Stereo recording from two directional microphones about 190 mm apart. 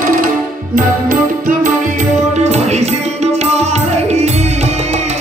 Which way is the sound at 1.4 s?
40° right (ahead or behind).